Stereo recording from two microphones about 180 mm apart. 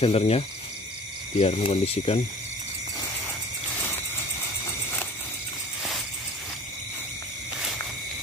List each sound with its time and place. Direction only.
0.0 s speech: 35° left (ahead or behind)